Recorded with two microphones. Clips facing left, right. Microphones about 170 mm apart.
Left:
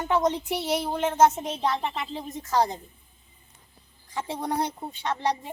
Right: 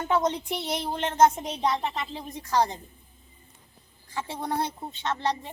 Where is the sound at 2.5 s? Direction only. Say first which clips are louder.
Even; 15° left (ahead or behind).